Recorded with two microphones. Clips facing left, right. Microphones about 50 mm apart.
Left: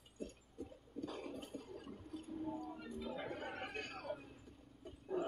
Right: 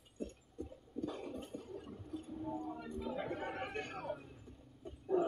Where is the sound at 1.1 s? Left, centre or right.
Centre.